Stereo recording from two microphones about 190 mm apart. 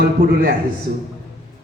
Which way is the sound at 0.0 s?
55° right (ahead or behind).